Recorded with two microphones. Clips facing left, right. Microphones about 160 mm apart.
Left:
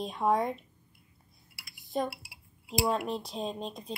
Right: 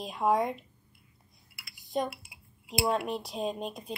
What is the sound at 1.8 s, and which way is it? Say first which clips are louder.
Cutlery: right 1 dB; centre (ahead or behind).